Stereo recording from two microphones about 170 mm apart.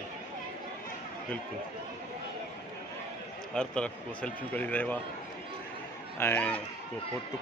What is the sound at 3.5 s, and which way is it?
Speech, 5° left (ahead or behind).